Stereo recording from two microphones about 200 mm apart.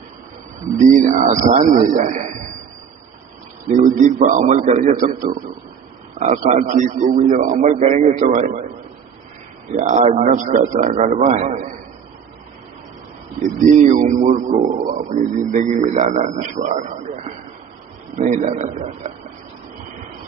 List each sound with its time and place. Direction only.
0.9 s a man's voice: 40° right (ahead or behind)
3.7 s a man's voice: 40° right (ahead or behind)
9.7 s a man's voice: 40° right (ahead or behind)
13.4 s a man's voice: 40° right (ahead or behind)